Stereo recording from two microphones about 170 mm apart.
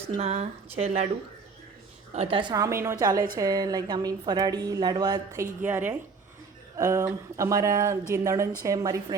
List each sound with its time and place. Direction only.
0.2 s speech: 35° right (ahead or behind)
2.1 s speech: 30° right (ahead or behind)